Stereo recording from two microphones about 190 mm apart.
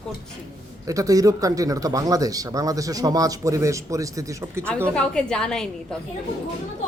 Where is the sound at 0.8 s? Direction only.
15° right (ahead or behind).